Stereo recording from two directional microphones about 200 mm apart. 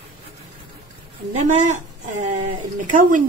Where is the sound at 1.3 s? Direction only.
35° right (ahead or behind).